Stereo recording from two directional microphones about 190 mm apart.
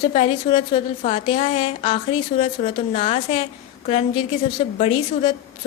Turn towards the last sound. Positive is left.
turn(degrees=30)  # may be behind; listen again after turning